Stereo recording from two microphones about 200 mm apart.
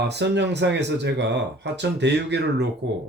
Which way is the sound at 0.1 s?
60° right (ahead or behind).